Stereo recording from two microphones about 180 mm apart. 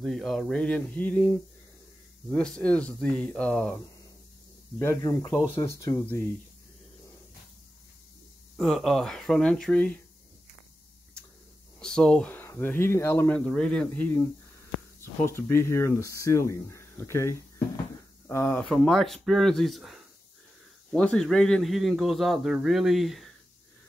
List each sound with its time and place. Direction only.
0.0 s speech: centre (ahead or behind)
4.7 s speech: 15° left (ahead or behind)
8.5 s speech: centre (ahead or behind)
11.8 s speech: 5° left (ahead or behind)